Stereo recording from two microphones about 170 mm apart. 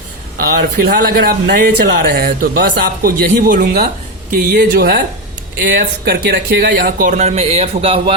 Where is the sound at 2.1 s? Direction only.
60° right (ahead or behind).